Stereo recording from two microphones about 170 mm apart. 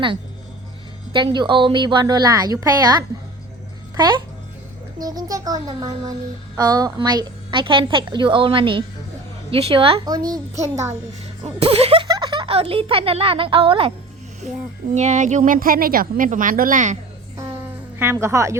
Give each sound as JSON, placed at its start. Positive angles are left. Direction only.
{"t": 1.1, "sound": "a woman's voice", "side_deg": -25}
{"t": 11.4, "sound": "speech", "side_deg": -35}
{"t": 12.0, "sound": "a child's voice", "side_deg": -25}
{"t": 14.8, "sound": "speech", "side_deg": -45}
{"t": 17.3, "sound": "music", "side_deg": -20}
{"t": 18.0, "sound": "speech", "side_deg": -15}